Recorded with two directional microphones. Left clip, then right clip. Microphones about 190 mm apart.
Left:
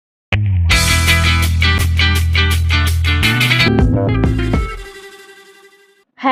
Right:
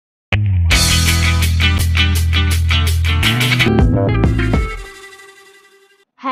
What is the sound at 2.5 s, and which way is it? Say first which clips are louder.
Music: left 1 dB; centre (ahead or behind).